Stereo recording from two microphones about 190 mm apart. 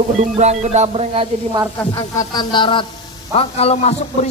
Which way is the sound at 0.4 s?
35° right (ahead or behind).